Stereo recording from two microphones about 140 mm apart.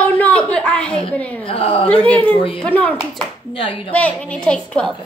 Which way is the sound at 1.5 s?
40° left (ahead or behind).